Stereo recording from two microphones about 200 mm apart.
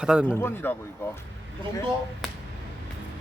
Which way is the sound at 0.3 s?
10° left (ahead or behind).